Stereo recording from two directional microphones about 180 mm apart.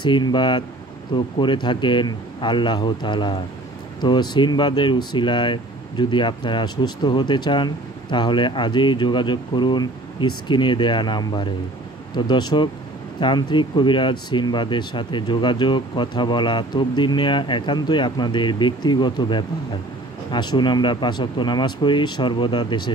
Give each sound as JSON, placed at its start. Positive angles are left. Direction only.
{"t": 0.0, "sound": "speech", "side_deg": 25}